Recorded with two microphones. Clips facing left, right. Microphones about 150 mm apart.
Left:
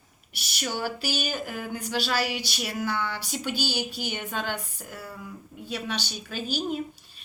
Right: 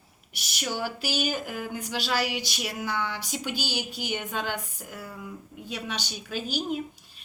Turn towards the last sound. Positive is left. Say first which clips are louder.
# even
turn(degrees=-15)  # may be behind; listen again after turning